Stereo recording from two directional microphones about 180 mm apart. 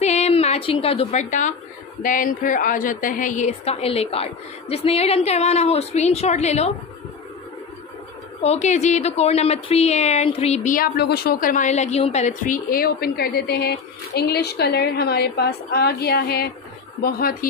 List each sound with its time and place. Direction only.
0.0 s a sound: 40° left (ahead or behind)
2.0 s a woman's voice: 50° left (ahead or behind)
8.4 s a woman's voice: 40° left (ahead or behind)